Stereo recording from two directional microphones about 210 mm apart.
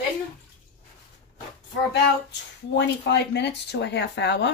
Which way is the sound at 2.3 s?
55° left (ahead or behind).